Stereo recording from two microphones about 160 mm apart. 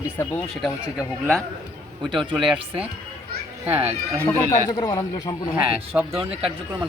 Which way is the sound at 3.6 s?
15° right (ahead or behind).